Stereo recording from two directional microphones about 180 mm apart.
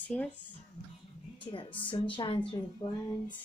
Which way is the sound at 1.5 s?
25° left (ahead or behind).